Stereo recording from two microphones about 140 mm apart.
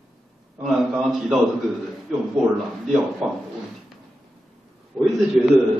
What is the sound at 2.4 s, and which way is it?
Speech, centre (ahead or behind).